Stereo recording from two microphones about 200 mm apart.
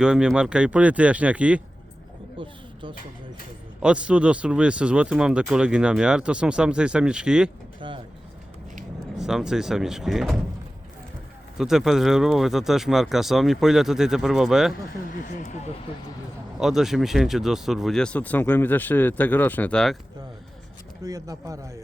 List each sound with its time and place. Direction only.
0.0 s speech: 5° right (ahead or behind)
3.8 s speech: 5° right (ahead or behind)
7.8 s speech: 25° right (ahead or behind)
9.1 s speech: 5° right (ahead or behind)
11.5 s speech: centre (ahead or behind)
15.0 s speech: 40° left (ahead or behind)
16.6 s speech: centre (ahead or behind)
21.0 s speech: 15° right (ahead or behind)